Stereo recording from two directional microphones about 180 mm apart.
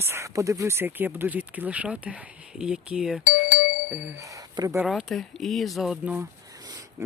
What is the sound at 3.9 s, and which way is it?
Speech, 5° right (ahead or behind).